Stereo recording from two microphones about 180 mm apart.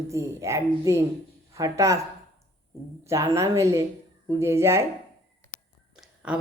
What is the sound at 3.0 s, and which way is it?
Speech, 15° right (ahead or behind).